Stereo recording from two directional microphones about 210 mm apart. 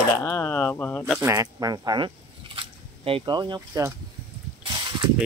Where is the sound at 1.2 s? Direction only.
15° right (ahead or behind).